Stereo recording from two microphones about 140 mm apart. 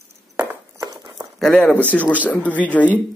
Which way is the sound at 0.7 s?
25° right (ahead or behind).